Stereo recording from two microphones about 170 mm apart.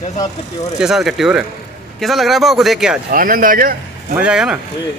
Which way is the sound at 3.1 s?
55° right (ahead or behind).